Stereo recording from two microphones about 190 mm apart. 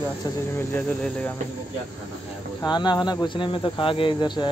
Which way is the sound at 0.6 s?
10° left (ahead or behind).